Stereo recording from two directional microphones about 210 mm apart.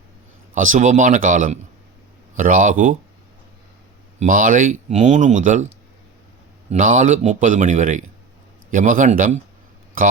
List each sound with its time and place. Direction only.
0.5 s speech: 35° right (ahead or behind)
4.2 s speech: 40° right (ahead or behind)